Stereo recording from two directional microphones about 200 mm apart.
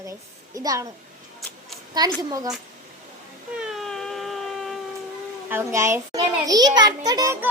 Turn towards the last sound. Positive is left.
turn(degrees=-15)  # may be behind; listen again after turning